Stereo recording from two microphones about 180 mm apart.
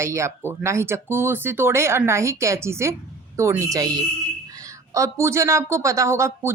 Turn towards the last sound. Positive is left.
turn(degrees=-15)  # may be behind; listen again after turning